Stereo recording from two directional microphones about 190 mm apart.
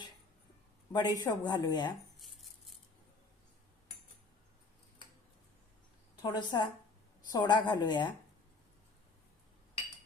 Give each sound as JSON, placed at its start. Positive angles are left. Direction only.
{"t": 0.9, "sound": "a woman's voice", "side_deg": 20}
{"t": 6.2, "sound": "a woman's voice", "side_deg": 20}